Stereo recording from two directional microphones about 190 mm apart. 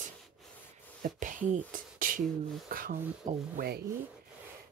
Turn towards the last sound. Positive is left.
turn(degrees=-55)  # may be behind; listen again after turning